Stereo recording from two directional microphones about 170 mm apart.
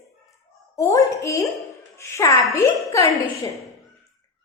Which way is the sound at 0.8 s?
20° left (ahead or behind).